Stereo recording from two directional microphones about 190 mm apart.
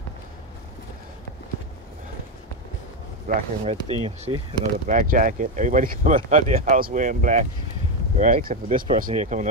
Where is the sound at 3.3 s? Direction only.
40° right (ahead or behind).